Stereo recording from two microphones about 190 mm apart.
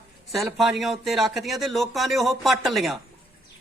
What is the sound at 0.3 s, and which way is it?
Speech, centre (ahead or behind).